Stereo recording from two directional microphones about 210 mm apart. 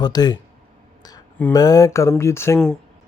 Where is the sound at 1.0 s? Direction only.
20° left (ahead or behind).